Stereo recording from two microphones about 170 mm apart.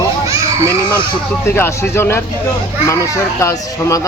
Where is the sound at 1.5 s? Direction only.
15° left (ahead or behind).